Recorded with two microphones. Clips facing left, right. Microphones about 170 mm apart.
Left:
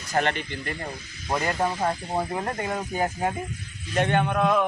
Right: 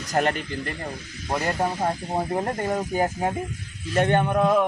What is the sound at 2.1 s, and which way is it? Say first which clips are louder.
Speech: right 2 dB; 35° right (ahead or behind).